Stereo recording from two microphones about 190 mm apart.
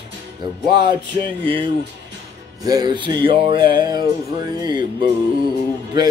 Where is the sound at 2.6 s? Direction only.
20° right (ahead or behind).